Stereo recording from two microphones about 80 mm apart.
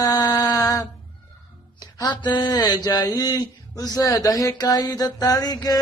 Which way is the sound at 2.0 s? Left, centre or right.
Left.